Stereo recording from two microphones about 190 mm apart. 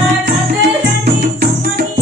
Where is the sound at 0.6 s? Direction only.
60° right (ahead or behind).